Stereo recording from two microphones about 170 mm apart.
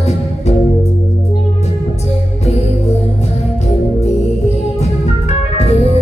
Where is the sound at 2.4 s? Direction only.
40° left (ahead or behind).